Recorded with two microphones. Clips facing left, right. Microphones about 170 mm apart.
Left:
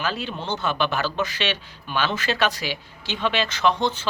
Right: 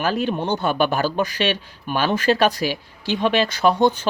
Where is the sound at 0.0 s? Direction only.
50° right (ahead or behind).